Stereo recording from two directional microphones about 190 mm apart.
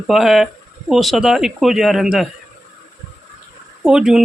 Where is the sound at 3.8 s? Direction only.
5° right (ahead or behind).